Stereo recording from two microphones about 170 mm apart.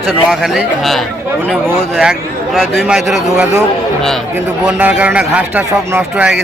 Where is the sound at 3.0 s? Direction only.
15° right (ahead or behind).